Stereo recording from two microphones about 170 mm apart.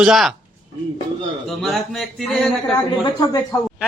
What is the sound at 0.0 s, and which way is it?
Speech, centre (ahead or behind).